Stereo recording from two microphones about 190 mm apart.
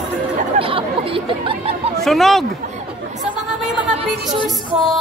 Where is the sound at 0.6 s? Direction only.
30° right (ahead or behind).